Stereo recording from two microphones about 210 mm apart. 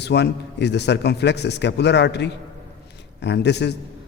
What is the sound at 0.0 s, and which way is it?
A man's voice, 55° left (ahead or behind).